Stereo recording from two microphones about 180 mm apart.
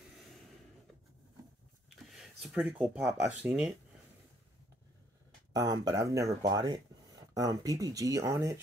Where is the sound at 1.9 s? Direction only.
Centre (ahead or behind).